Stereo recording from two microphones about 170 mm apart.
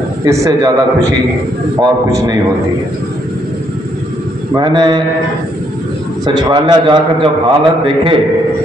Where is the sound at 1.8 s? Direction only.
25° right (ahead or behind).